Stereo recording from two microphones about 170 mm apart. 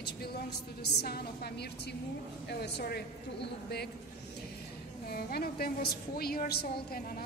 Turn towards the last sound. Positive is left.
turn(degrees=60)  # may be behind; listen again after turning